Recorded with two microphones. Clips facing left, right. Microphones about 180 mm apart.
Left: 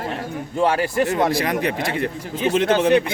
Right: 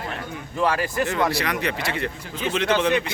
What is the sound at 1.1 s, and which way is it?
A man's voice, 45° left (ahead or behind).